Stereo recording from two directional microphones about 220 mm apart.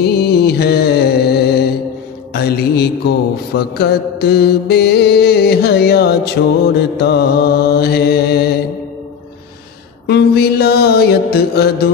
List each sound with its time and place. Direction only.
0.0 s music: 45° left (ahead or behind)
2.3 s mantra: 45° left (ahead or behind)
10.0 s mantra: 50° left (ahead or behind)